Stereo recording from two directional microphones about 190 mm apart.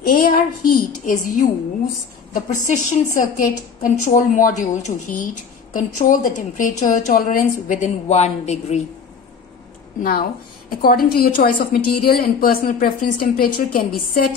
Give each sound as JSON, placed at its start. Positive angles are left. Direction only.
{"t": 0.0, "sound": "a woman's voice", "side_deg": 50}
{"t": 10.8, "sound": "a woman's voice", "side_deg": 55}